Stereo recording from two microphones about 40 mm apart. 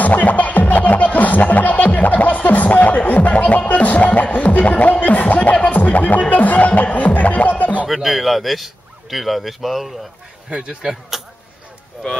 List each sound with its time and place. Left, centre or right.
0.0 s music: left
7.9 s speech: centre
10.5 s speech: right
10.9 s a sound: centre